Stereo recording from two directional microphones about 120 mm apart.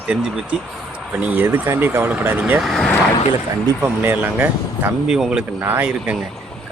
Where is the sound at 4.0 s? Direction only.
15° right (ahead or behind).